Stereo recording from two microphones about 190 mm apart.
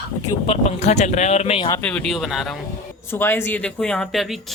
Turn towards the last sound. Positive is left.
turn(degrees=0)  # may be behind; listen again after turning